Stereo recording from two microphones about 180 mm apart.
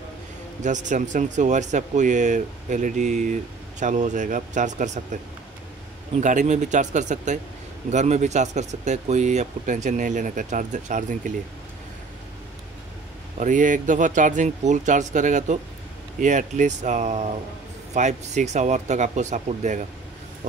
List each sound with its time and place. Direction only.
0.6 s speech: 45° right (ahead or behind)
6.2 s speech: 40° right (ahead or behind)
13.4 s speech: 45° right (ahead or behind)